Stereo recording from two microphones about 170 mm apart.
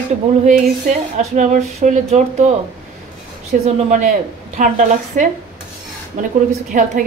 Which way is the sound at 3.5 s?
55° right (ahead or behind).